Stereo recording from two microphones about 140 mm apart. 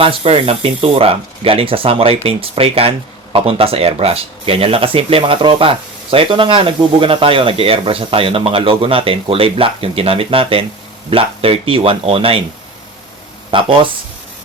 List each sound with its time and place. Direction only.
0.0 s speech: 40° right (ahead or behind)
13.5 s speech: 40° right (ahead or behind)